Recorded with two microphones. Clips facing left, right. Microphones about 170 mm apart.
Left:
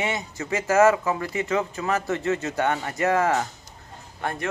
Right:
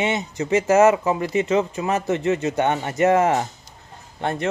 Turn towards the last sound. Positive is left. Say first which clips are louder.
# right 5 dB
turn(degrees=-25)  # may be behind; listen again after turning